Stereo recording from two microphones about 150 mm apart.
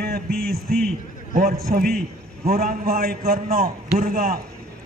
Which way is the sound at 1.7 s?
80° right.